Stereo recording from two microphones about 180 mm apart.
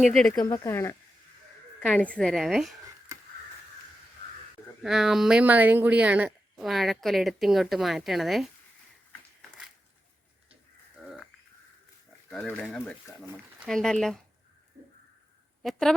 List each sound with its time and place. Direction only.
0.0 s speech: centre (ahead or behind)
0.3 s speech: 20° left (ahead or behind); by 2.7 s centre (ahead or behind)
4.8 s speech: centre (ahead or behind)
12.3 s speech: 10° left (ahead or behind)
15.6 s speech: centre (ahead or behind)